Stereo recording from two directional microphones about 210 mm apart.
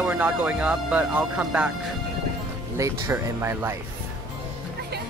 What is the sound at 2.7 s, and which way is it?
Speech, 15° right (ahead or behind).